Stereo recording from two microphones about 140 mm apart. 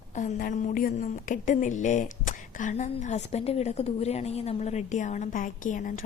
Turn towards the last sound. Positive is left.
turn(degrees=70)  # may be behind; listen again after turning